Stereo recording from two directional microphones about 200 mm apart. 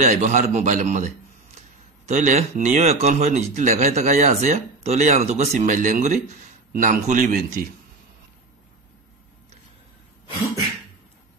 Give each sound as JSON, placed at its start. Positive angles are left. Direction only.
{"t": 0.0, "sound": "a man's voice", "side_deg": -35}